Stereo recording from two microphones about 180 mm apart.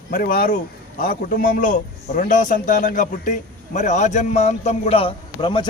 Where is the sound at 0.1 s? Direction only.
50° left (ahead or behind).